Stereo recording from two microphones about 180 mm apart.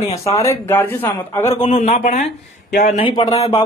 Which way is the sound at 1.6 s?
45° left (ahead or behind).